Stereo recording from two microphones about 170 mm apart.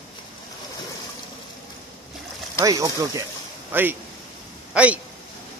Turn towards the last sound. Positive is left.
turn(degrees=-5)  # may be behind; listen again after turning